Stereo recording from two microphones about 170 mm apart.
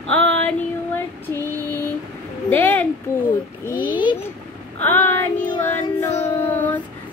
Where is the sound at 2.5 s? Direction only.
10° left (ahead or behind).